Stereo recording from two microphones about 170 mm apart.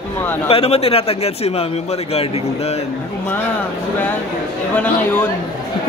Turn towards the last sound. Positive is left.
turn(degrees=10)  # may be behind; listen again after turning